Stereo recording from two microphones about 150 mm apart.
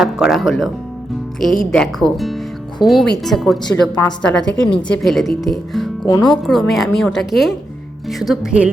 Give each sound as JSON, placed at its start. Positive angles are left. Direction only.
{"t": 0.0, "sound": "a woman's voice", "side_deg": 0}
{"t": 6.1, "sound": "speech", "side_deg": 25}
{"t": 6.4, "sound": "a woman's voice", "side_deg": 0}